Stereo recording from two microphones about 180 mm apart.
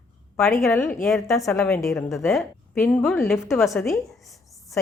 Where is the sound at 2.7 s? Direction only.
15° left (ahead or behind).